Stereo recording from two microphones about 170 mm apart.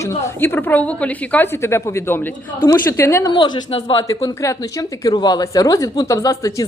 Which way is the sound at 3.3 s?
25° left (ahead or behind).